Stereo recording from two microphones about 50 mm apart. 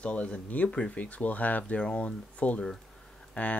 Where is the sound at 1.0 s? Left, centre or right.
Left.